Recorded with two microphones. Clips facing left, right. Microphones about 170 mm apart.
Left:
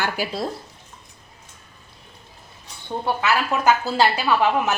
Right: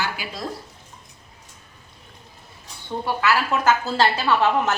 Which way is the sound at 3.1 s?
20° left (ahead or behind).